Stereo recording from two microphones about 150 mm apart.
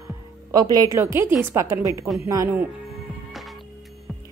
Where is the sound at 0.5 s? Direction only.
25° right (ahead or behind).